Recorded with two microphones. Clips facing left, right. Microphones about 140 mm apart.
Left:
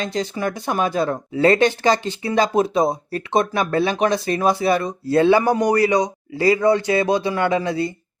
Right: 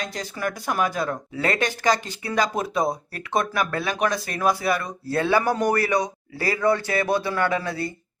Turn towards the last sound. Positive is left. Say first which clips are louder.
# left 5 dB
turn(degrees=20)  # may be behind; listen again after turning